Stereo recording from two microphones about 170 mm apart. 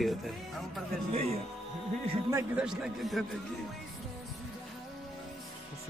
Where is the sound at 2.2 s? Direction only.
15° right (ahead or behind).